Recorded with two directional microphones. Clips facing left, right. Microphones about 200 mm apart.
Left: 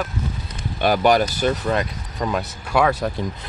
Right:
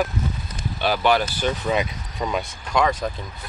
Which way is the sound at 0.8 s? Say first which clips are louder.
Left 4 dB; 45° left (ahead or behind).